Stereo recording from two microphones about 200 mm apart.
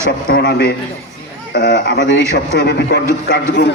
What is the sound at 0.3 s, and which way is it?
Speech, 50° left (ahead or behind).